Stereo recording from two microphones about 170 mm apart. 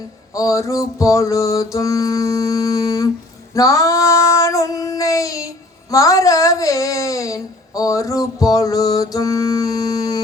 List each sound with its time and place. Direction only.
0.3 s music: 20° left (ahead or behind)
3.5 s child singing: 20° left (ahead or behind)